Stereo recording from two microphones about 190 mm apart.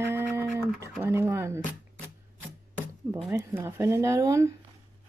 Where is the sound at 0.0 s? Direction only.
10° right (ahead or behind).